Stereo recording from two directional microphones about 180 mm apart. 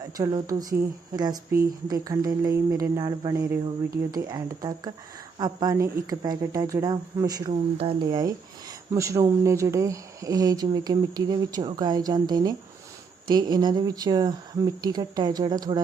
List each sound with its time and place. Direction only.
0.2 s speech: 20° right (ahead or behind)
7.5 s speech: 30° right (ahead or behind)